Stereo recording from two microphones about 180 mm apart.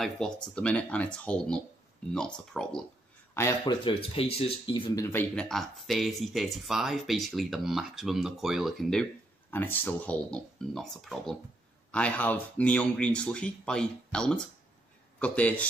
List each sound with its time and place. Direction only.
0.0 s speech: 5° left (ahead or behind)
3.3 s speech: 15° left (ahead or behind)
3.8 s speech: 30° left (ahead or behind); by 9.0 s centre (ahead or behind)
9.5 s speech: 10° left (ahead or behind)